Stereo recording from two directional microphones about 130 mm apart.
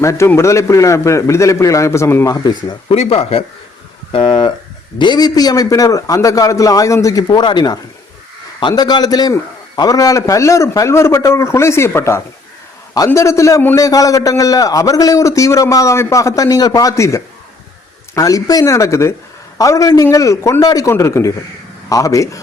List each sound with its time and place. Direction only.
0.0 s a man's voice: 20° left (ahead or behind)
2.9 s speech: 50° left (ahead or behind)
4.1 s a man's voice: 35° left (ahead or behind)